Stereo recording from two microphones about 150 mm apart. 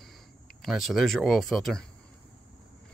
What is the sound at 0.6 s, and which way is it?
Speech, centre (ahead or behind).